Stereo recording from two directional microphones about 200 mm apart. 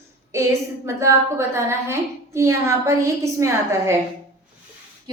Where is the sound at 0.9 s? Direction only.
15° right (ahead or behind).